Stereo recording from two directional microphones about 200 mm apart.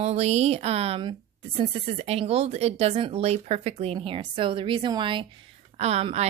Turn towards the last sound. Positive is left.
turn(degrees=-35)  # may be behind; listen again after turning